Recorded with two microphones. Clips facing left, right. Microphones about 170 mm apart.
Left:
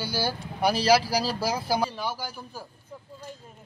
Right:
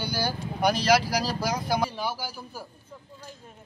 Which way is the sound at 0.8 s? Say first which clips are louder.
Left 3 dB; 30° left (ahead or behind).